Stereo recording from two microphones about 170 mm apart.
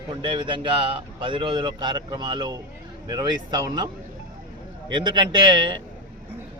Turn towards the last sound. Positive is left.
turn(degrees=-25)  # may be behind; listen again after turning